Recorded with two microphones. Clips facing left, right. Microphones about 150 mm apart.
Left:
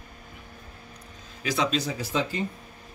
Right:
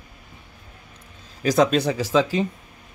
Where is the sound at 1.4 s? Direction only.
45° right (ahead or behind); by 2.4 s 90° right.